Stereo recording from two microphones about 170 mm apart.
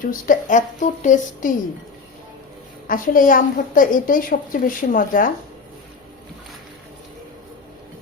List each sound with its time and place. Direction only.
0.0 s a woman's voice: 55° left (ahead or behind)
2.8 s a woman's voice: 55° left (ahead or behind)